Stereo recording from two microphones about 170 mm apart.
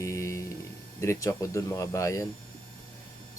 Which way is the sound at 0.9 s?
20° left (ahead or behind).